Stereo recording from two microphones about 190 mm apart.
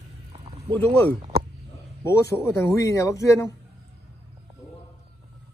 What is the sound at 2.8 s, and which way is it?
Speech, 15° left (ahead or behind).